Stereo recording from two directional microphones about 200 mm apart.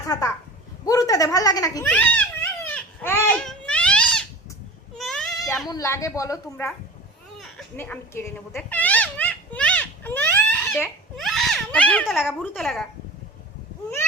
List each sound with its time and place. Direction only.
0.1 s a woman's voice: 15° left (ahead or behind)
0.9 s giggle: 15° left (ahead or behind)
4.9 s a sound: centre (ahead or behind)
5.6 s a woman's voice: 15° left (ahead or behind)
7.8 s a sound: 10° left (ahead or behind)
12.3 s speech: centre (ahead or behind)